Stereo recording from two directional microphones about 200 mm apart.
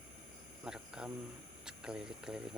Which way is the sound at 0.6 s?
5° right (ahead or behind).